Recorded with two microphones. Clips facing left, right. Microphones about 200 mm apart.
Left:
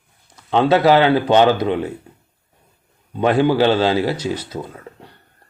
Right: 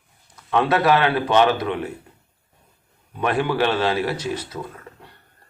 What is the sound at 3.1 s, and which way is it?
Speech, 30° left (ahead or behind).